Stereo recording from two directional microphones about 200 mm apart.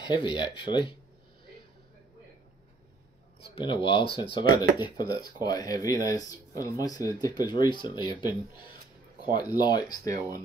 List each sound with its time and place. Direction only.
0.1 s speech: 25° left (ahead or behind)
3.5 s speech: 25° left (ahead or behind)